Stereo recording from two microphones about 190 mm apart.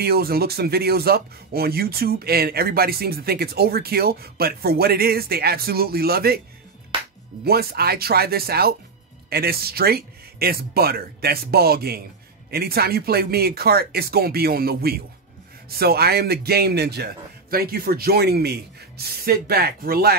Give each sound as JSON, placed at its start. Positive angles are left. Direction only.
{"t": 0.0, "sound": "speech", "side_deg": -55}
{"t": 7.4, "sound": "speech", "side_deg": -55}